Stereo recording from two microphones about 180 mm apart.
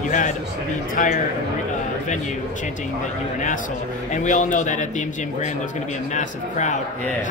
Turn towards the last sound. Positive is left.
turn(degrees=40)  # may be behind; listen again after turning